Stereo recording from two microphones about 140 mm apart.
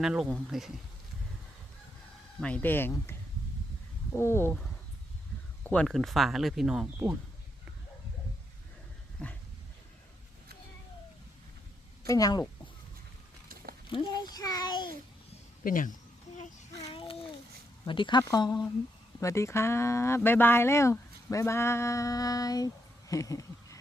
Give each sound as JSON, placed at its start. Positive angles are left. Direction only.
{"t": 0.0, "sound": "speech", "side_deg": -5}
{"t": 2.4, "sound": "speech", "side_deg": 10}
{"t": 5.6, "sound": "speech", "side_deg": 5}
{"t": 9.1, "sound": "dog", "side_deg": 10}
{"t": 12.0, "sound": "speech", "side_deg": 25}
{"t": 13.9, "sound": "speech", "side_deg": 30}
{"t": 15.6, "sound": "a sound", "side_deg": 75}
{"t": 16.9, "sound": "a sound", "side_deg": 40}
{"t": 17.8, "sound": "speech", "side_deg": 35}